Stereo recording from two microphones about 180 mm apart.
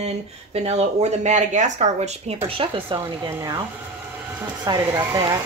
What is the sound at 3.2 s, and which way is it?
Speech, 20° right (ahead or behind).